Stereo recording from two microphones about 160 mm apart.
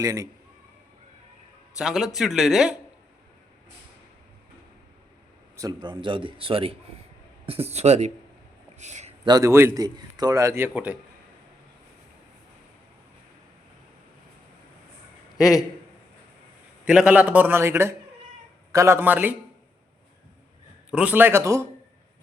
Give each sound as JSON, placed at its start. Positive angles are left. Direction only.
{"t": 0.0, "sound": "a man's voice", "side_deg": -20}
{"t": 1.8, "sound": "speech", "side_deg": 0}
{"t": 5.5, "sound": "a man's voice", "side_deg": -25}
{"t": 8.8, "sound": "a sound", "side_deg": -45}
{"t": 9.2, "sound": "a man's voice", "side_deg": -20}
{"t": 16.8, "sound": "a man's voice", "side_deg": -5}
{"t": 20.9, "sound": "a man's voice", "side_deg": -10}